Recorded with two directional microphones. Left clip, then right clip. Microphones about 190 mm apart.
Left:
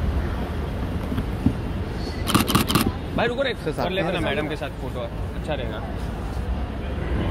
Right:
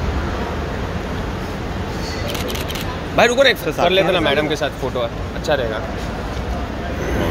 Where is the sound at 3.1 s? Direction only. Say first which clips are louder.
Right 11 dB; 60° right (ahead or behind).